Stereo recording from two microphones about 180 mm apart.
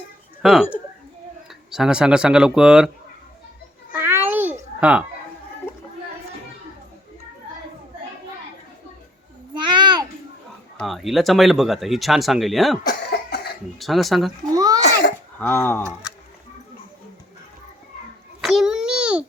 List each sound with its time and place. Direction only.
0.4 s speech: 5° right (ahead or behind)
3.9 s babbling: 10° right (ahead or behind)
4.8 s speech: 5° right (ahead or behind)
9.6 s a sound: 25° right (ahead or behind)
10.8 s speech: centre (ahead or behind)
12.9 s cough: 60° left (ahead or behind)
13.7 s speech: centre (ahead or behind)
14.5 s a sound: 20° right (ahead or behind)
14.8 s a sound: 70° left (ahead or behind)
15.4 s speech: 10° left (ahead or behind)
18.4 s babbling: centre (ahead or behind)